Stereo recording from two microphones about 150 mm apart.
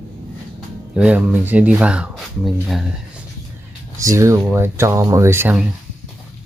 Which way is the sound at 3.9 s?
20° right (ahead or behind).